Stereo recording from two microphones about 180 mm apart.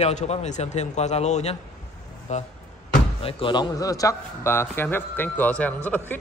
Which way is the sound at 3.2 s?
25° left (ahead or behind).